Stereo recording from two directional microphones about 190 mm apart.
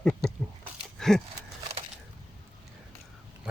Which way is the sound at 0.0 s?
5° left (ahead or behind).